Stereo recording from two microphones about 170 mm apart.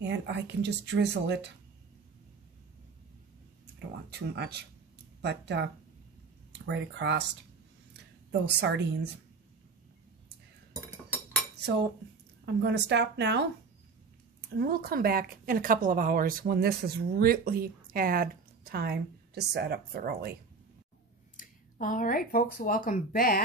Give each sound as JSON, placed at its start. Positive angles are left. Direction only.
{"t": 0.0, "sound": "speech", "side_deg": -90}
{"t": 4.1, "sound": "speech", "side_deg": -75}
{"t": 5.2, "sound": "speech", "side_deg": -85}
{"t": 7.9, "sound": "a sound", "side_deg": -90}
{"t": 12.6, "sound": "speech", "side_deg": -85}
{"t": 14.6, "sound": "speech", "side_deg": -65}
{"t": 21.4, "sound": "speech", "side_deg": 50}